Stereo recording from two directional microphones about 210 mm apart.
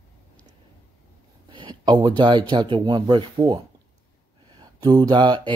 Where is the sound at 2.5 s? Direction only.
20° right (ahead or behind).